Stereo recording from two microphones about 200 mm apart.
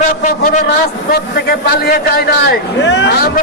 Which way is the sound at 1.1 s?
50° left (ahead or behind).